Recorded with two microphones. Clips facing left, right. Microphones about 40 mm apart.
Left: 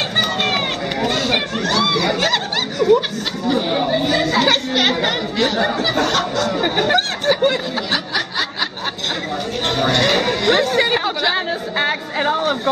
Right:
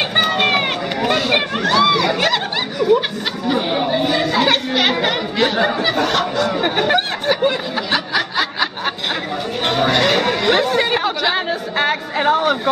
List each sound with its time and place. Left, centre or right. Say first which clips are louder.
0.1 s run: right 4 dB; centre
3.4 s chatter: even; centre
6.6 s a sound: left 1 dB; centre
7.9 s snicker: right 4 dB; centre
9.7 s chatter: right 1 dB; centre